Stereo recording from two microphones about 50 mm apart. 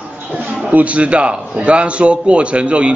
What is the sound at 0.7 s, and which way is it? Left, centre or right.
A man's voice, right.